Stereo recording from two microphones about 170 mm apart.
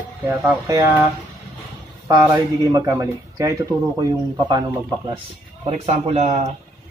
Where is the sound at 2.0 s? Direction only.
20° right (ahead or behind).